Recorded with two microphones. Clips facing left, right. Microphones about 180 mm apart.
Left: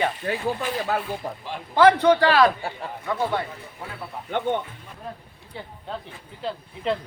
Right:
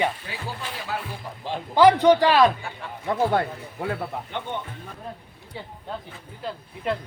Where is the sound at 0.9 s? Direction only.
50° left (ahead or behind).